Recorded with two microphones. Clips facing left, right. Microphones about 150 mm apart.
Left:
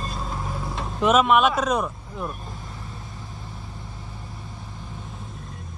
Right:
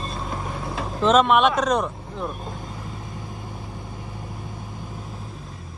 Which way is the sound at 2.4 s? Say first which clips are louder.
Right 4 dB; 20° right (ahead or behind).